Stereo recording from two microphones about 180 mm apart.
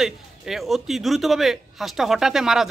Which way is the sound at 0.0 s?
Centre (ahead or behind).